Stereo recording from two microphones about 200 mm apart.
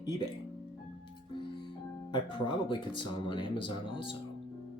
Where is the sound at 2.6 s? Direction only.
25° left (ahead or behind).